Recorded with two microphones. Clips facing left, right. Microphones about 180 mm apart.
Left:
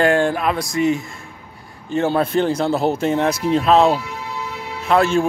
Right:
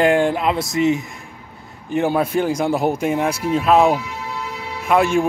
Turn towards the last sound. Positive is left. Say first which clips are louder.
# even
turn(degrees=-15)  # may be behind; listen again after turning